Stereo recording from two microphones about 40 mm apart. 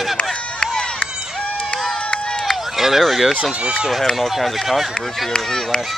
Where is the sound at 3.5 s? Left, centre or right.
Right.